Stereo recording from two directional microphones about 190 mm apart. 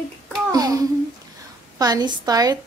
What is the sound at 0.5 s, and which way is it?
Child singing, 20° right (ahead or behind).